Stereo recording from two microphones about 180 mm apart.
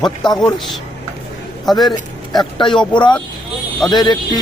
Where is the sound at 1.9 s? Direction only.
25° left (ahead or behind).